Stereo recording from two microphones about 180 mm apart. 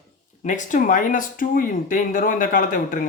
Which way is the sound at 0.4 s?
45° left (ahead or behind).